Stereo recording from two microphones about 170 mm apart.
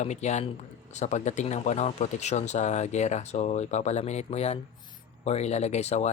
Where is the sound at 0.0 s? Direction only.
40° left (ahead or behind).